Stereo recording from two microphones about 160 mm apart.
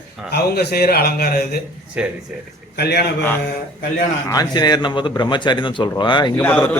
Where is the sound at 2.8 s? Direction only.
90° left.